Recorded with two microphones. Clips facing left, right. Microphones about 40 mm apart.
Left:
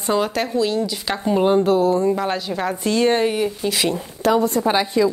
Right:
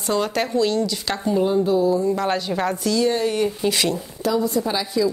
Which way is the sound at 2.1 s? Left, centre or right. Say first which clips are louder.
Even; centre.